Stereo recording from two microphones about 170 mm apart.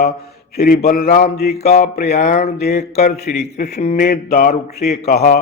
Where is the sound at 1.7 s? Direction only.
65° left (ahead or behind).